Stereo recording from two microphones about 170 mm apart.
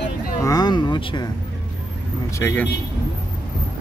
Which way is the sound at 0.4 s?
20° left (ahead or behind).